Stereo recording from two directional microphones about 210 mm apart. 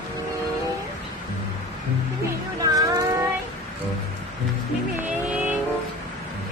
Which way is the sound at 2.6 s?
15° right (ahead or behind).